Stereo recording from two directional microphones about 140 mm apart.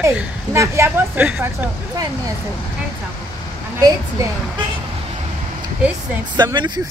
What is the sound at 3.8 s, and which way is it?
Speech, 25° right (ahead or behind).